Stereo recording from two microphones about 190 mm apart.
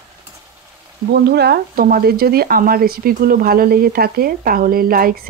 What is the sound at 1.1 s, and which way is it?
Speech, 60° right (ahead or behind).